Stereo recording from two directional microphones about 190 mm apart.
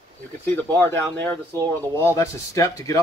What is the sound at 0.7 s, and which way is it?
Speech, 10° left (ahead or behind).